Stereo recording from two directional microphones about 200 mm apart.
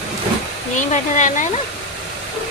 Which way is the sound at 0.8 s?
40° left (ahead or behind).